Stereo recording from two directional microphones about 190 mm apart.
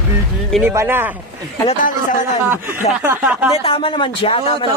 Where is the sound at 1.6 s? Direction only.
45° left (ahead or behind).